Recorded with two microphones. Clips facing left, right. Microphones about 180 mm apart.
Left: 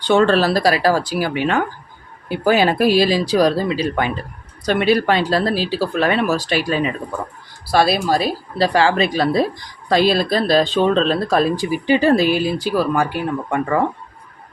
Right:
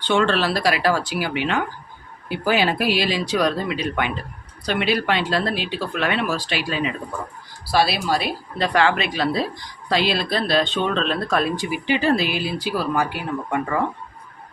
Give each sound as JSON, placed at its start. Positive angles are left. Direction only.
{"t": 0.1, "sound": "speech", "side_deg": 40}